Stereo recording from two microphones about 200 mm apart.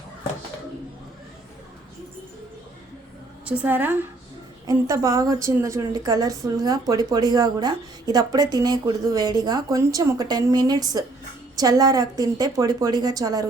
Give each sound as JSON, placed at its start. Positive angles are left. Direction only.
{"t": 3.4, "sound": "a woman's voice", "side_deg": -10}